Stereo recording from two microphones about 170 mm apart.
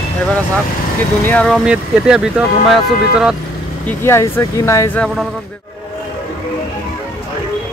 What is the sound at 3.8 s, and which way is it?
Speech, 15° left (ahead or behind).